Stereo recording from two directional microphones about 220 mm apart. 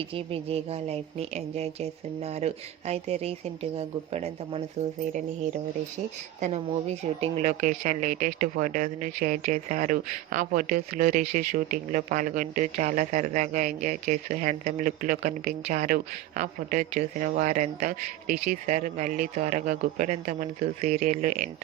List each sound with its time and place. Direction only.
0.1 s a woman's voice: 25° right (ahead or behind)
6.4 s speech: 30° right (ahead or behind)